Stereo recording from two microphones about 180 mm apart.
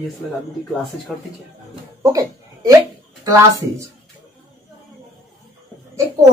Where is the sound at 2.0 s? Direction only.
20° right (ahead or behind).